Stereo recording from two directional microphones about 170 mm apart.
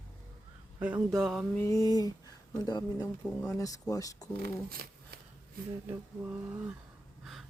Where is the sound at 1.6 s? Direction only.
20° left (ahead or behind).